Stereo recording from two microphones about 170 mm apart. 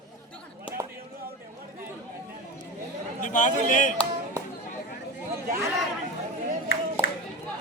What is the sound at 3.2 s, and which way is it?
Speech, 45° left (ahead or behind).